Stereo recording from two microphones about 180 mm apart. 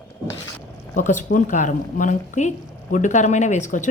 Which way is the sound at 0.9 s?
45° left (ahead or behind).